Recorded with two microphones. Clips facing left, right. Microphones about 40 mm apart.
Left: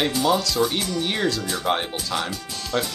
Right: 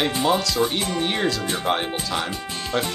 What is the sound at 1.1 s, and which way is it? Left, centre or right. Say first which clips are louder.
Speech: right 1 dB; centre.